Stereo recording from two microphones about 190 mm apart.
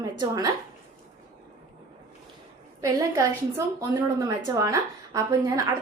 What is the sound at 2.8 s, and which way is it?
A woman's voice, 15° right (ahead or behind).